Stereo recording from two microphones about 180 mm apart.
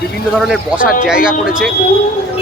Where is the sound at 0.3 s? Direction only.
Centre (ahead or behind).